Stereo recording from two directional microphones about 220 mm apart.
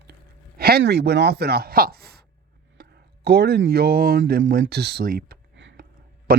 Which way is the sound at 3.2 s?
45° right (ahead or behind).